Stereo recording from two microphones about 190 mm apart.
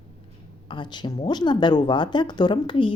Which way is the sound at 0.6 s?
25° left (ahead or behind).